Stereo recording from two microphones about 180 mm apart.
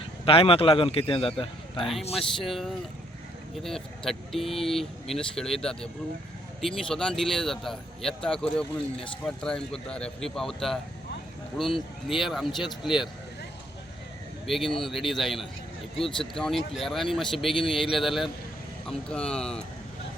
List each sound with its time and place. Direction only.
0.3 s a man's voice: 30° left (ahead or behind)
2.1 s speech: centre (ahead or behind)
14.4 s speech: centre (ahead or behind)